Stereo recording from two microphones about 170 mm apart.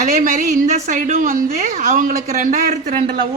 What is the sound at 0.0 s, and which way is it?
Speech, 50° right (ahead or behind).